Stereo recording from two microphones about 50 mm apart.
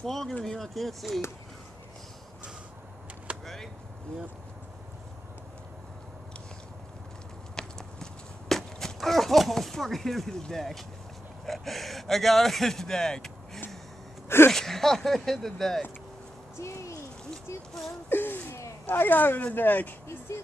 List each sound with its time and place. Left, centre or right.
0.0 s speech: centre
3.3 s a sound: right
7.5 s horse: centre
11.4 s speech: centre
14.5 s speech: centre
16.5 s speech: left
18.1 s a sound: left
19.0 s speech: left